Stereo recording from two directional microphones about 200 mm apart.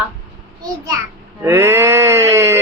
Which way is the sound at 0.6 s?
20° right (ahead or behind).